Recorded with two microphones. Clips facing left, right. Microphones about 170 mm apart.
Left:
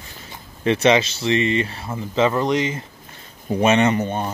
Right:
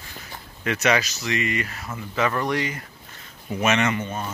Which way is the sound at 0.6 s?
30° left (ahead or behind).